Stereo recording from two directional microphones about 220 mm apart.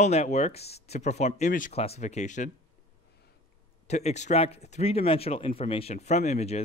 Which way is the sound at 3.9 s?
30° left (ahead or behind).